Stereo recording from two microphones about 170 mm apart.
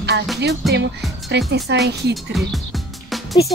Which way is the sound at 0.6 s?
Centre (ahead or behind).